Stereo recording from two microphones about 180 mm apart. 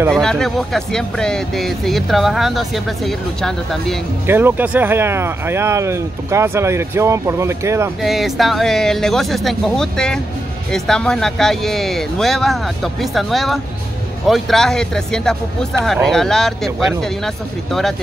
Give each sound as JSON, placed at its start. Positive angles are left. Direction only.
{"t": 0.1, "sound": "speech", "side_deg": 5}
{"t": 4.3, "sound": "speech", "side_deg": -10}
{"t": 8.0, "sound": "speech", "side_deg": 0}